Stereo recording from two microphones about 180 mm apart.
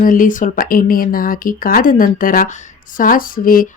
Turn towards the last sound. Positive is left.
turn(degrees=50)  # may be behind; listen again after turning